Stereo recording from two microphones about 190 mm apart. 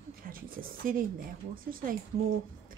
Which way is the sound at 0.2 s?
50° right (ahead or behind).